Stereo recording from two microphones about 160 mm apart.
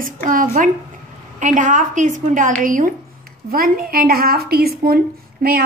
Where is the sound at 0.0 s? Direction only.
55° right (ahead or behind).